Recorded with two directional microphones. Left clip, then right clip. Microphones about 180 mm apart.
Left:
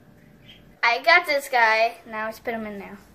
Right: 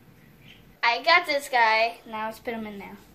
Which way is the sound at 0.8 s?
10° left (ahead or behind).